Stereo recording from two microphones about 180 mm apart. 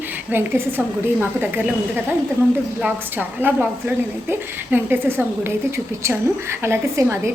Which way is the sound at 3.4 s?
10° right (ahead or behind).